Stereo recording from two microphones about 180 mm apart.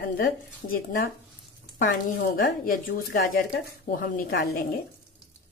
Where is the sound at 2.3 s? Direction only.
50° left (ahead or behind).